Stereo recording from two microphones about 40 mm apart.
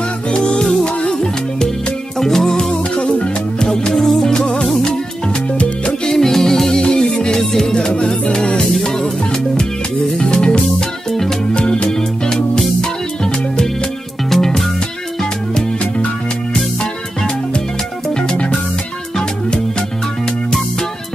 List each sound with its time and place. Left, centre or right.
0.3 s music: centre
3.9 s music: centre
5.3 s music: left
6.0 s music: centre
7.7 s music: left
10.8 s music: centre
11.5 s music: left
14.3 s music: centre
16.5 s music: centre